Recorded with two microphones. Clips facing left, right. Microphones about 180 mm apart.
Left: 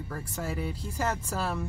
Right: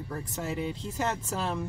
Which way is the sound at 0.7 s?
10° left (ahead or behind).